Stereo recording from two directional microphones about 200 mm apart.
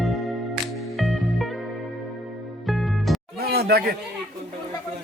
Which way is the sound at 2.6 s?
Centre (ahead or behind).